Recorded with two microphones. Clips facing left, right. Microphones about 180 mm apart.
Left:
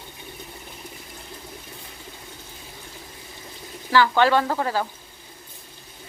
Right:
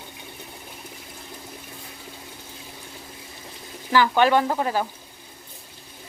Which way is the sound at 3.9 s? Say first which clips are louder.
Even; 15° right (ahead or behind).